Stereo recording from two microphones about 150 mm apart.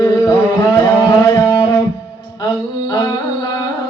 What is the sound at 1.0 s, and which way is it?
Music, 25° left (ahead or behind).